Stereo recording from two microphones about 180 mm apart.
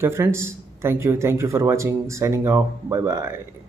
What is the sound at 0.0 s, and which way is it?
A man's voice, 15° right (ahead or behind).